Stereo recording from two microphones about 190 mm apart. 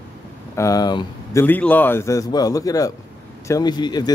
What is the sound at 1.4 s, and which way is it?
Speech, 10° left (ahead or behind).